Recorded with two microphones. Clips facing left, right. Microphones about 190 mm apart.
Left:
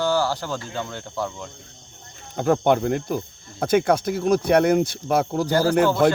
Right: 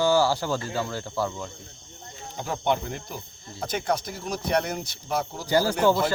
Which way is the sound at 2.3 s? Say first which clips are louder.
Left 8 dB; 55° left (ahead or behind).